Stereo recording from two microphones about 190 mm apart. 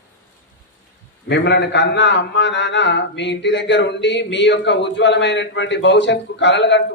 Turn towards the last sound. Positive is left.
turn(degrees=70)  # may be behind; listen again after turning